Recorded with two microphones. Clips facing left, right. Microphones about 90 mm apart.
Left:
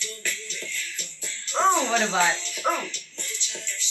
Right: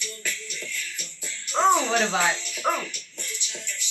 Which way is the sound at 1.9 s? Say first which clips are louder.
Left 1 dB; 15° right (ahead or behind).